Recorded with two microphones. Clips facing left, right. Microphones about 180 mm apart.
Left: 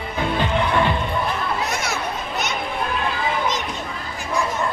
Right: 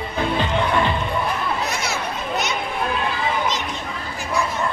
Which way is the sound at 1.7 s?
50° left (ahead or behind).